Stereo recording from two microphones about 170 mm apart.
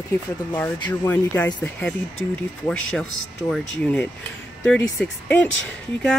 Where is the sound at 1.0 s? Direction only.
10° left (ahead or behind).